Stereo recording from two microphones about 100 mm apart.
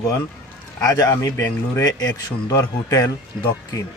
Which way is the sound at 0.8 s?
35° left (ahead or behind).